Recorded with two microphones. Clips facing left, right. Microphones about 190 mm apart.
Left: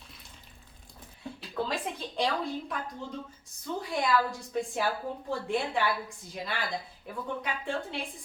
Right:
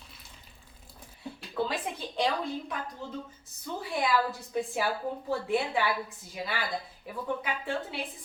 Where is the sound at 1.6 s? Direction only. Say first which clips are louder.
Even; centre (ahead or behind).